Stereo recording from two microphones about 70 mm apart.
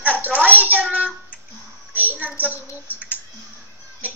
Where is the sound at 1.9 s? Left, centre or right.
Right.